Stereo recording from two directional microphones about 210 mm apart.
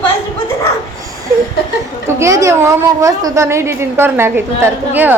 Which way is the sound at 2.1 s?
15° right (ahead or behind).